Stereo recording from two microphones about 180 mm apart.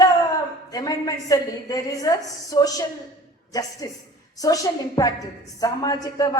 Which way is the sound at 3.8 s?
20° left (ahead or behind).